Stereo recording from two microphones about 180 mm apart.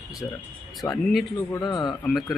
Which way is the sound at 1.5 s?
20° left (ahead or behind).